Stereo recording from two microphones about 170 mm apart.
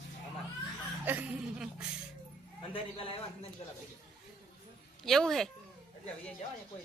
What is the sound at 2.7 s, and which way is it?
Speech, 35° left (ahead or behind).